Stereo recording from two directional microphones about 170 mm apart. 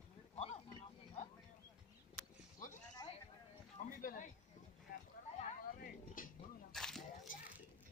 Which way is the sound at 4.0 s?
55° left (ahead or behind).